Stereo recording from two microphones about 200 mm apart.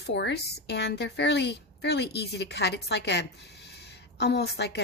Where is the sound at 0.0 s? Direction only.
55° left (ahead or behind).